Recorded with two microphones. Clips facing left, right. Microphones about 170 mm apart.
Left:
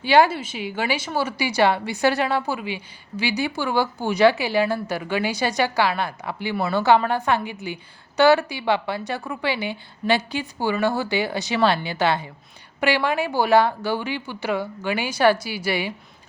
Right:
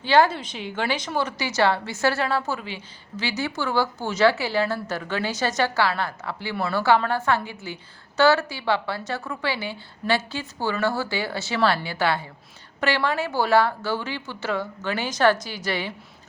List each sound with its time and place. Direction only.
0.0 s a woman's voice: 10° left (ahead or behind)